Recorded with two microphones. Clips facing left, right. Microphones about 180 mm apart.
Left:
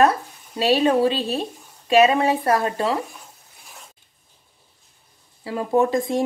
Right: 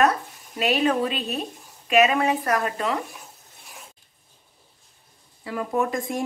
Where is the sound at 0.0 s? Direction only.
30° left (ahead or behind).